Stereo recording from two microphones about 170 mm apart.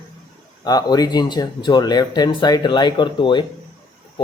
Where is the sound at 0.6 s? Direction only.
25° left (ahead or behind).